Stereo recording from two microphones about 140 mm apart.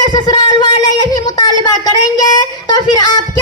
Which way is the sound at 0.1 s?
30° left (ahead or behind).